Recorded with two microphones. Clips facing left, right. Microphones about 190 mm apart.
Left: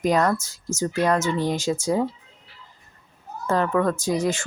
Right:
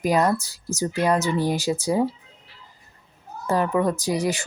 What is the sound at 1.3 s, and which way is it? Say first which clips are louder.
Speech: right 1 dB; 10° right (ahead or behind).